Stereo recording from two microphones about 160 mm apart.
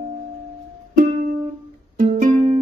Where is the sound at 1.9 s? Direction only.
55° right (ahead or behind).